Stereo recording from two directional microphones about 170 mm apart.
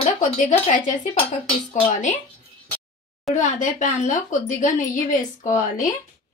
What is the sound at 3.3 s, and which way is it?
Speech, 45° left (ahead or behind).